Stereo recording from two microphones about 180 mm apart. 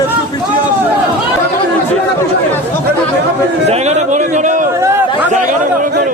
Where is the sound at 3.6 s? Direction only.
35° right (ahead or behind).